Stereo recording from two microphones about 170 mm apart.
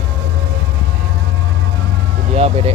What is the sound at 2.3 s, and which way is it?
Vehicle, 35° right (ahead or behind).